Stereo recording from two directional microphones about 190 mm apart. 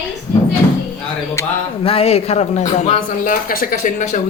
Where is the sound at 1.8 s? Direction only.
30° left (ahead or behind).